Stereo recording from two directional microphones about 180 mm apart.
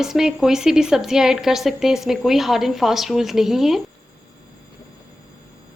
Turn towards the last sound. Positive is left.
turn(degrees=0)  # may be behind; listen again after turning